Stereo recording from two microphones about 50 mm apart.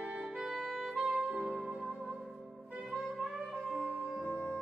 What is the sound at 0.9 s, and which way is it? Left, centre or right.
Saxophone, right.